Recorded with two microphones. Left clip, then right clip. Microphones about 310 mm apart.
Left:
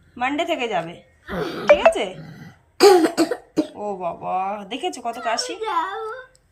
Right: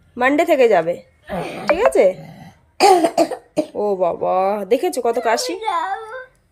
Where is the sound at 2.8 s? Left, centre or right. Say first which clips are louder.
Right 1 dB; centre.